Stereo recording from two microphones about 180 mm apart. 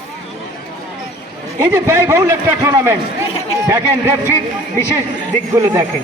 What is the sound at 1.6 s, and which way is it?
A man's voice, 15° right (ahead or behind).